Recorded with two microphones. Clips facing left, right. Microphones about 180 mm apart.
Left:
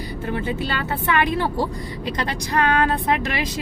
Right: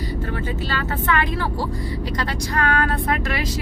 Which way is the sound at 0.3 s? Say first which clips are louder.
Left 2 dB; 20° left (ahead or behind).